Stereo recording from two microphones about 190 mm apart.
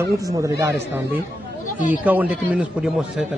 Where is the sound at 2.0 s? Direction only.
10° right (ahead or behind).